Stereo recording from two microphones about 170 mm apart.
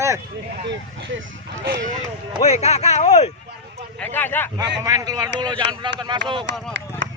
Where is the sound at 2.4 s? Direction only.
40° left (ahead or behind).